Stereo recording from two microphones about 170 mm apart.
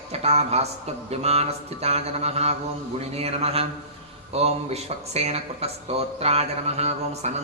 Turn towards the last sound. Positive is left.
turn(degrees=-40)  # may be behind; listen again after turning